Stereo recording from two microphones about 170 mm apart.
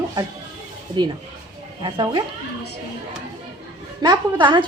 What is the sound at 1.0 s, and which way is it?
A woman's voice, 30° right (ahead or behind).